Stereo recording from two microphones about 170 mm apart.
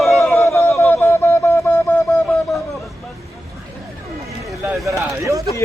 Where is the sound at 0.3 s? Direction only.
15° left (ahead or behind).